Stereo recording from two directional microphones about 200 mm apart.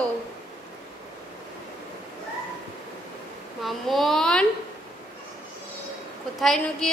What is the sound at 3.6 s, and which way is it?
Speech, centre (ahead or behind).